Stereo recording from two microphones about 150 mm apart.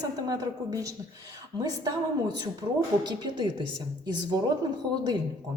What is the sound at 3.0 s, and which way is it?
Speech, 30° right (ahead or behind).